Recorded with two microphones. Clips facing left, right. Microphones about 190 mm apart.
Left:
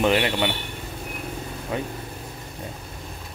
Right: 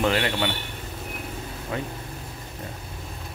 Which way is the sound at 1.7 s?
15° left (ahead or behind).